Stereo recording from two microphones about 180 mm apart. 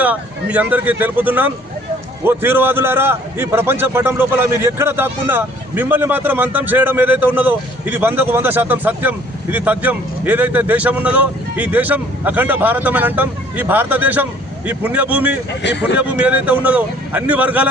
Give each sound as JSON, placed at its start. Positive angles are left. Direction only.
{"t": 0.0, "sound": "a man's voice", "side_deg": -10}
{"t": 15.6, "sound": "speech", "side_deg": 75}
{"t": 16.0, "sound": "a man's voice", "side_deg": -10}